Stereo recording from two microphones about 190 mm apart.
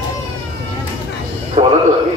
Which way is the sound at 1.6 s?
35° right (ahead or behind).